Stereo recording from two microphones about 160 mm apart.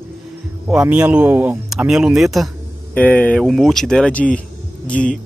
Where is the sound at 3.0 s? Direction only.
10° left (ahead or behind).